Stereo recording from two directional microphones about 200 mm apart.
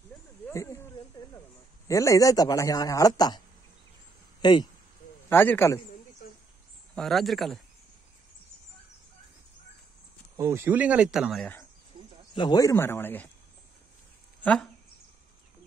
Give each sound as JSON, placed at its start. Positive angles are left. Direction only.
{"t": 0.5, "sound": "a sound", "side_deg": 15}
{"t": 1.9, "sound": "a man's voice", "side_deg": 15}
{"t": 5.3, "sound": "a man's voice", "side_deg": 10}
{"t": 7.0, "sound": "speech", "side_deg": 0}
{"t": 10.3, "sound": "speech", "side_deg": -15}
{"t": 12.4, "sound": "a man's voice", "side_deg": 20}
{"t": 14.4, "sound": "speech", "side_deg": 5}